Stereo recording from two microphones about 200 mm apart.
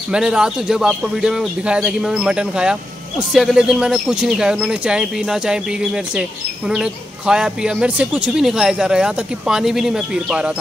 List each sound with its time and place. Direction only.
0.1 s a man's voice: 5° right (ahead or behind)